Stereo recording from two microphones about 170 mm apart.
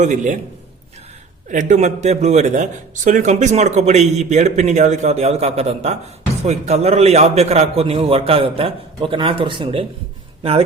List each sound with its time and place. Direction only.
0.0 s a man's voice: 45° right (ahead or behind)
1.5 s a man's voice: 45° right (ahead or behind); by 9.8 s 30° right (ahead or behind)